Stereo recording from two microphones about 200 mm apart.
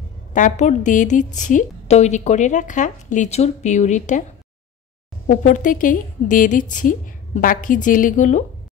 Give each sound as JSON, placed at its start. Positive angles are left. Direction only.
{"t": 0.3, "sound": "a woman's voice", "side_deg": 40}
{"t": 5.2, "sound": "a woman's voice", "side_deg": 40}